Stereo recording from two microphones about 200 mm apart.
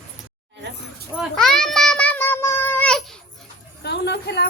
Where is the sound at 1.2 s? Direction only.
Centre (ahead or behind).